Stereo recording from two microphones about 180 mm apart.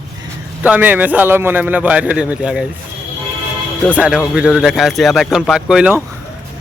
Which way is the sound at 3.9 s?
5° right (ahead or behind).